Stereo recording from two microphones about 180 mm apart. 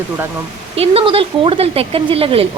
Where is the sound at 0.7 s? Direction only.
30° right (ahead or behind).